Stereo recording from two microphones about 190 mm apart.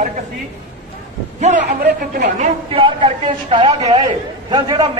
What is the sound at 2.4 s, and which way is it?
A man's voice, 30° right (ahead or behind).